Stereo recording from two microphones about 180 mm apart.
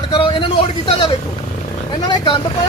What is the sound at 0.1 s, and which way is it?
Vehicle, 25° left (ahead or behind).